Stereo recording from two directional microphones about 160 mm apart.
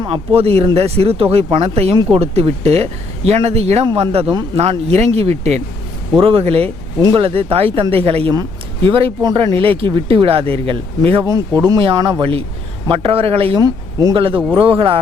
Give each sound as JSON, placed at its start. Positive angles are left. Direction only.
{"t": 0.1, "sound": "speech", "side_deg": -40}
{"t": 11.2, "sound": "speech", "side_deg": -20}